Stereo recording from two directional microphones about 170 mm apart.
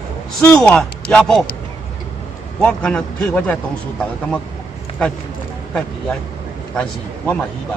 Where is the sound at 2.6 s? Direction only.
5° left (ahead or behind).